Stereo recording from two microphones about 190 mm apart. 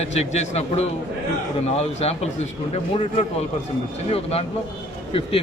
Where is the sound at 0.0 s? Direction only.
35° left (ahead or behind).